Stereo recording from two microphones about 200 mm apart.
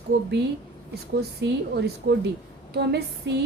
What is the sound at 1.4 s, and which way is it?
A woman's voice, 55° right (ahead or behind).